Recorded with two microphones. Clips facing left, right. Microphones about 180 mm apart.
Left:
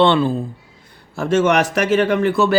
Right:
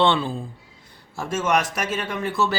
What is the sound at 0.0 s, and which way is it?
Speech, 55° left (ahead or behind).